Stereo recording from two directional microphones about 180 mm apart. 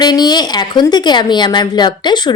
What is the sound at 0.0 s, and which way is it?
A woman's voice, 25° left (ahead or behind).